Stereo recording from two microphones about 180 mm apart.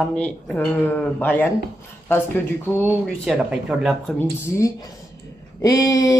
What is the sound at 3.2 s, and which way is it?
Speech, 5° right (ahead or behind).